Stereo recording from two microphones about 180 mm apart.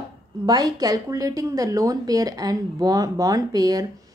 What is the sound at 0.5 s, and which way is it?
Speech, 20° right (ahead or behind).